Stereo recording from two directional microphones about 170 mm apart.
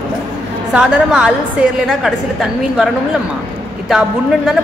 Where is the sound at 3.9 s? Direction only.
Centre (ahead or behind).